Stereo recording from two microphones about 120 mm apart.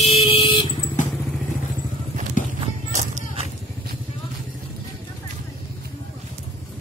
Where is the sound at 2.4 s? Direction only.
90° left.